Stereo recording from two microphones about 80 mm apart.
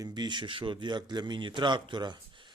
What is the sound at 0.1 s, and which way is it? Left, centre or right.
A man's voice, right.